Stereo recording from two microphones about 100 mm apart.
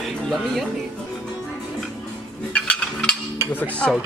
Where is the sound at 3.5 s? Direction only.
10° left (ahead or behind).